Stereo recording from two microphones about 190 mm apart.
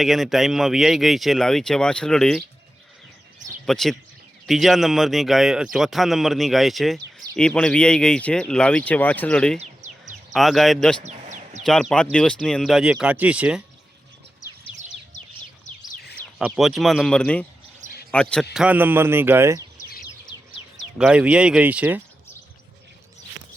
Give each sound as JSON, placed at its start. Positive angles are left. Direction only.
{"t": 0.0, "sound": "speech", "side_deg": 0}
{"t": 3.7, "sound": "speech", "side_deg": 0}
{"t": 9.6, "sound": "a sound", "side_deg": -40}
{"t": 10.3, "sound": "speech", "side_deg": 0}
{"t": 11.0, "sound": "bird", "side_deg": -35}
{"t": 11.6, "sound": "speech", "side_deg": 0}
{"t": 16.4, "sound": "speech", "side_deg": 0}
{"t": 18.5, "sound": "speech", "side_deg": -5}
{"t": 21.0, "sound": "speech", "side_deg": -5}